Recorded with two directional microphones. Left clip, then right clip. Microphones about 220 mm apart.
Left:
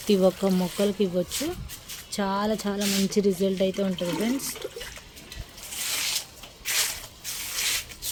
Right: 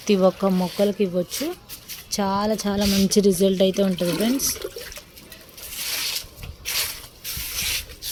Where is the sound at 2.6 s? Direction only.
25° right (ahead or behind).